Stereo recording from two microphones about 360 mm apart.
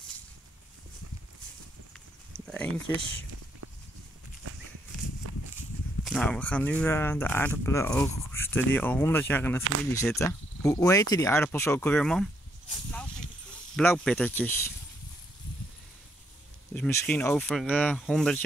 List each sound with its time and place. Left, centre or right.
2.3 s a sound: centre
3.6 s horse: right
5.2 s walk: right
6.0 s speech: centre
13.7 s speech: centre
16.7 s speech: centre